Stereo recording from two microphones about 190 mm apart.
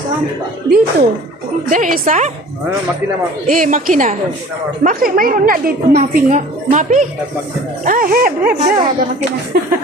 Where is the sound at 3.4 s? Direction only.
45° right (ahead or behind).